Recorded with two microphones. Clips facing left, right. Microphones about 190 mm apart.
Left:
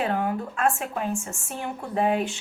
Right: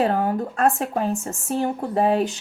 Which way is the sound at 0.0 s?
40° right (ahead or behind).